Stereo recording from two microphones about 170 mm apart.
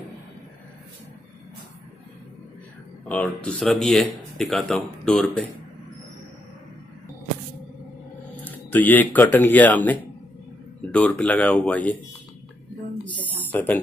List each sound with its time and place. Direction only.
3.1 s speech: 5° left (ahead or behind)
8.5 s speech: 10° left (ahead or behind)
13.5 s speech: 10° left (ahead or behind)